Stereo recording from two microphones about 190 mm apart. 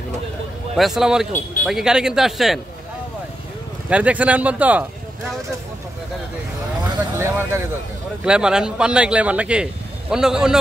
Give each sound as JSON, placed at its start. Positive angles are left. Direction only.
{"t": 0.7, "sound": "a man's voice", "side_deg": 0}
{"t": 3.9, "sound": "speech", "side_deg": -5}
{"t": 7.2, "sound": "a man's voice", "side_deg": -15}